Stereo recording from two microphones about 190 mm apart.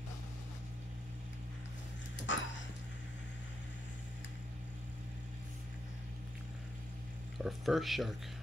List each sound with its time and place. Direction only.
2.2 s dog: 75° left (ahead or behind)
7.3 s speech: centre (ahead or behind)